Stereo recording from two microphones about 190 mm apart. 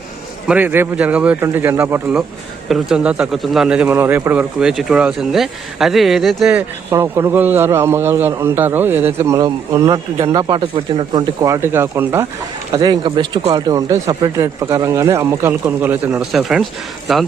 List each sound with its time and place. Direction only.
0.4 s speech: 10° right (ahead or behind)